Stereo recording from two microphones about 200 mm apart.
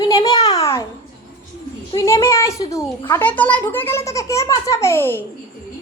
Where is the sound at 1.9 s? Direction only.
15° left (ahead or behind).